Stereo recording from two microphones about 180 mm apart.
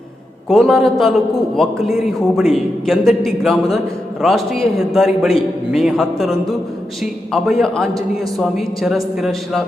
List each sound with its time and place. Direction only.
0.4 s a man's voice: centre (ahead or behind)